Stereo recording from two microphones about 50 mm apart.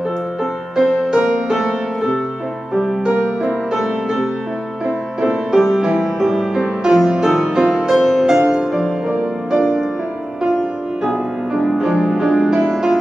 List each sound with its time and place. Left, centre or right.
0.7 s music: centre
1.6 s music: centre
3.1 s music: centre
3.7 s music: centre
11.1 s music: centre